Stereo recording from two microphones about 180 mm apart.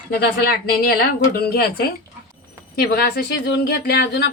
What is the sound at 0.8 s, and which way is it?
A woman's voice, 60° left (ahead or behind).